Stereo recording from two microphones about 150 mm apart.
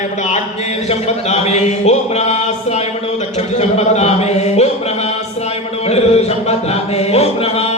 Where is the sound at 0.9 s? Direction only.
45° left (ahead or behind).